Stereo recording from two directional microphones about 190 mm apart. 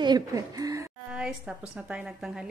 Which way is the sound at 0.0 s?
20° right (ahead or behind).